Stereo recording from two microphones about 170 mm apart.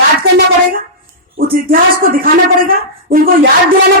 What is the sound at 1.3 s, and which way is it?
A woman's voice, 60° right (ahead or behind).